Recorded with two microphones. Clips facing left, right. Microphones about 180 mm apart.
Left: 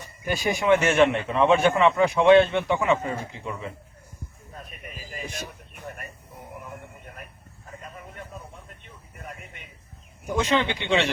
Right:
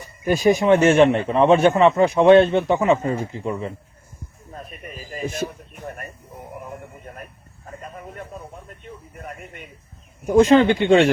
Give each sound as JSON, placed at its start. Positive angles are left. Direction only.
{"t": 0.3, "sound": "speech", "side_deg": 0}
{"t": 0.7, "sound": "speech", "side_deg": -35}
{"t": 10.3, "sound": "speech", "side_deg": -45}